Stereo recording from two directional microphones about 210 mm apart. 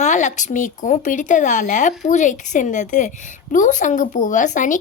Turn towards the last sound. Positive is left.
turn(degrees=35)  # may be behind; listen again after turning